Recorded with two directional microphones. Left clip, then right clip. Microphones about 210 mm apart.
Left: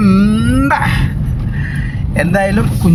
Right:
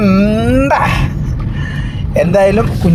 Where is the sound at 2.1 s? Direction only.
5° right (ahead or behind).